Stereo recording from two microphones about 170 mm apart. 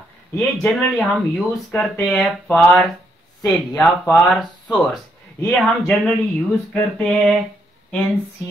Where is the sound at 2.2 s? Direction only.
5° left (ahead or behind).